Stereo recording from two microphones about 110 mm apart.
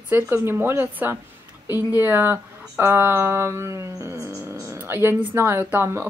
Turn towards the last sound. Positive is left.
turn(degrees=-20)  # may be behind; listen again after turning